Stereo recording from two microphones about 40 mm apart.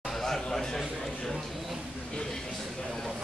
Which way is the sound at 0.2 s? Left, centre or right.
Centre.